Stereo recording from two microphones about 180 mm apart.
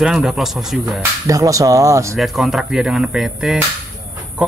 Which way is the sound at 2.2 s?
Centre (ahead or behind).